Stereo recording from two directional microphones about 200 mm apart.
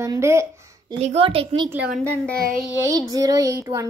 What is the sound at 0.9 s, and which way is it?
Speech, 30° right (ahead or behind).